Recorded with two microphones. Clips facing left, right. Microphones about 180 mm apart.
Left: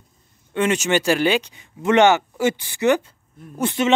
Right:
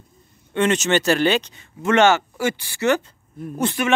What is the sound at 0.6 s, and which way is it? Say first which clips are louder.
Speech: right 1 dB; 10° left (ahead or behind).